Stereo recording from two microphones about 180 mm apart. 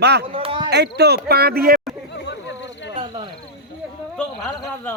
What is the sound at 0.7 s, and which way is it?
Speech, 65° right (ahead or behind).